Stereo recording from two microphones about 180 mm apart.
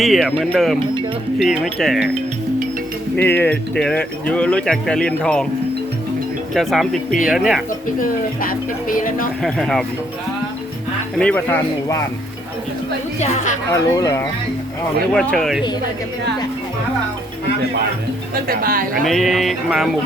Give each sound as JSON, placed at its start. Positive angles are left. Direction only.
{"t": 0.0, "sound": "speech", "side_deg": 0}
{"t": 3.2, "sound": "speech", "side_deg": 10}
{"t": 6.5, "sound": "speech", "side_deg": 0}
{"t": 7.9, "sound": "speech", "side_deg": 50}
{"t": 9.4, "sound": "speech", "side_deg": 0}
{"t": 11.2, "sound": "speech", "side_deg": 10}
{"t": 13.1, "sound": "speech", "side_deg": 40}
{"t": 13.7, "sound": "speech", "side_deg": 20}
{"t": 15.1, "sound": "speech", "side_deg": 5}
{"t": 18.4, "sound": "speech", "side_deg": -55}
{"t": 19.0, "sound": "speech", "side_deg": 0}